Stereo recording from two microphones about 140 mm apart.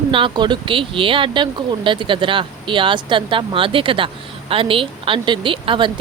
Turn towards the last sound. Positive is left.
turn(degrees=-35)  # may be behind; listen again after turning